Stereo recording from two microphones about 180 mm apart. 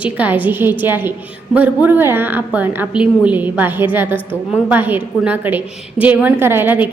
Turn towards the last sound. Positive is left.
turn(degrees=-10)  # may be behind; listen again after turning